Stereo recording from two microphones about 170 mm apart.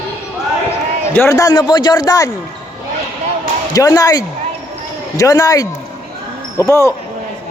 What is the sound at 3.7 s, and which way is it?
A man's voice, 20° left (ahead or behind).